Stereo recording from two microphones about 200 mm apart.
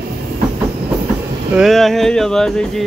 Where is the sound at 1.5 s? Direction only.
Centre (ahead or behind).